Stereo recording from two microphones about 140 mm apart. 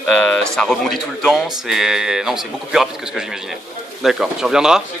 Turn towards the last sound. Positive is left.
turn(degrees=-5)  # may be behind; listen again after turning